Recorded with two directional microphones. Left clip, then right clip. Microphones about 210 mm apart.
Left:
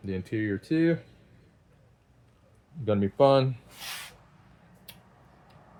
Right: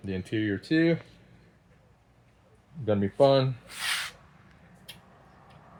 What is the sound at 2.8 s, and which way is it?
Speech, 20° left (ahead or behind).